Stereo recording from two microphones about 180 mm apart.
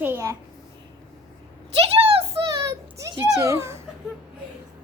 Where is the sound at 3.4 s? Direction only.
15° right (ahead or behind).